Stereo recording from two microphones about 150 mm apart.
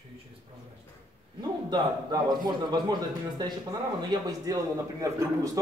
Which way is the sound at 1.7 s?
25° right (ahead or behind).